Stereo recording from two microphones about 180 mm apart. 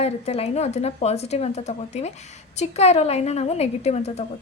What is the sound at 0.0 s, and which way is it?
A woman's voice, 35° left (ahead or behind).